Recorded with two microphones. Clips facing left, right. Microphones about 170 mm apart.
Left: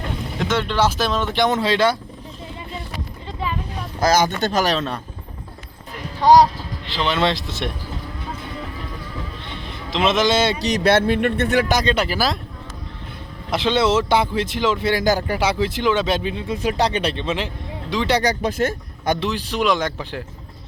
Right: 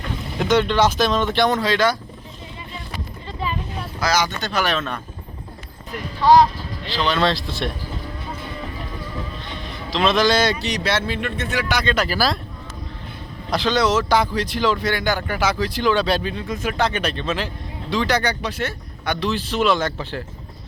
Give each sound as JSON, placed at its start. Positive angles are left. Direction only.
{"t": 0.4, "sound": "speech", "side_deg": 0}
{"t": 4.0, "sound": "speech", "side_deg": 50}
{"t": 7.0, "sound": "speech", "side_deg": 20}
{"t": 9.9, "sound": "speech", "side_deg": 20}
{"t": 10.6, "sound": "speech", "side_deg": 50}
{"t": 11.7, "sound": "speech", "side_deg": 40}
{"t": 11.9, "sound": "speech", "side_deg": 20}
{"t": 13.5, "sound": "speech", "side_deg": 25}
{"t": 16.6, "sound": "speech", "side_deg": 35}
{"t": 18.1, "sound": "speech", "side_deg": 40}
{"t": 19.2, "sound": "speech", "side_deg": 15}